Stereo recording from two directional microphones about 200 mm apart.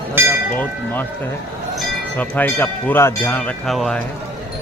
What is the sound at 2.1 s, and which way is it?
Speech, 10° left (ahead or behind).